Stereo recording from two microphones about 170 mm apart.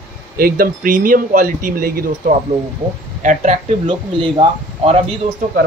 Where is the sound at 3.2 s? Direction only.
45° right (ahead or behind).